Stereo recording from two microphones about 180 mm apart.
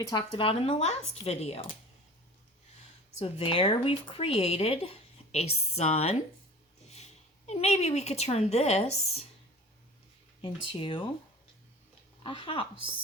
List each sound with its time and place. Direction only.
0.1 s speech: 25° left (ahead or behind)
3.2 s speech: 30° left (ahead or behind)
10.4 s speech: 30° left (ahead or behind)
12.2 s speech: 30° left (ahead or behind)